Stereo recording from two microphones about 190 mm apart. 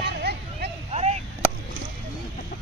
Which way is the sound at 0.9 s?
35° right (ahead or behind).